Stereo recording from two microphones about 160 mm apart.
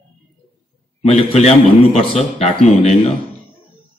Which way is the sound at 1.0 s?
40° left (ahead or behind).